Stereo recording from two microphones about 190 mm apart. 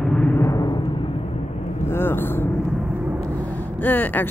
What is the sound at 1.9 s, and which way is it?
Vehicle, 10° left (ahead or behind).